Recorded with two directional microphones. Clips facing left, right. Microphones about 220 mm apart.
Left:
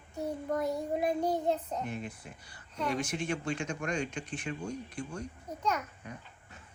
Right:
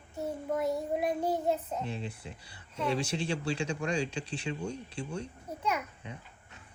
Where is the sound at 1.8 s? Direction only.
30° right (ahead or behind).